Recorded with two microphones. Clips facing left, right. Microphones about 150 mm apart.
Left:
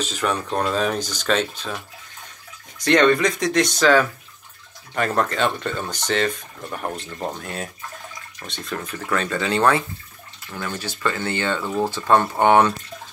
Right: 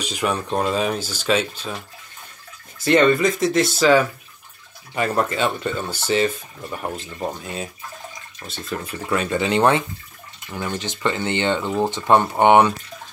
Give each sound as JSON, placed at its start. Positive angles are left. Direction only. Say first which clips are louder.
{"t": 0.0, "sound": "speech", "louder": "even", "side_deg": -10}
{"t": 2.8, "sound": "speech", "louder": "right 1 dB", "side_deg": -5}